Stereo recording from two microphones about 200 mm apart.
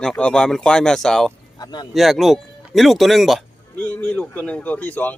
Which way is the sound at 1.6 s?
20° left (ahead or behind).